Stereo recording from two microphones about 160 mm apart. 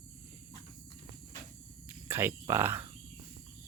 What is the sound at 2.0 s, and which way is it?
Cricket, 15° right (ahead or behind).